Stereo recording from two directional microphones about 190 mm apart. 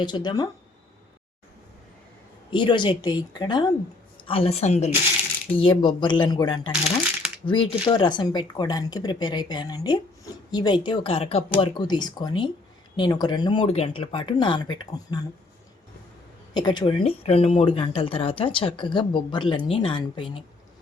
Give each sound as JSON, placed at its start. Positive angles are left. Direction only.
{"t": 0.0, "sound": "speech", "side_deg": 25}
{"t": 2.5, "sound": "a woman's voice", "side_deg": 25}
{"t": 16.6, "sound": "speech", "side_deg": 25}